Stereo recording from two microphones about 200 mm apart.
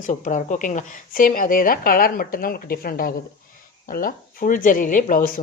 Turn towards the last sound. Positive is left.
turn(degrees=40)  # may be behind; listen again after turning